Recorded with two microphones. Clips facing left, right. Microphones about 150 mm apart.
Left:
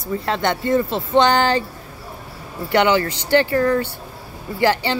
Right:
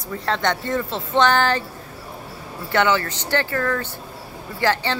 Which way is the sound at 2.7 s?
15° left (ahead or behind).